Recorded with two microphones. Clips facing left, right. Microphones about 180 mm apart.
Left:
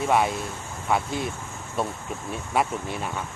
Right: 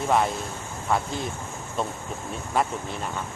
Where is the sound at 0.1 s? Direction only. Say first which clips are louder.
Even; 5° left (ahead or behind).